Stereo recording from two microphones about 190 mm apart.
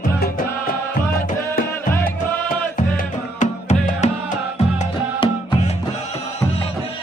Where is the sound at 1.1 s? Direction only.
50° left (ahead or behind).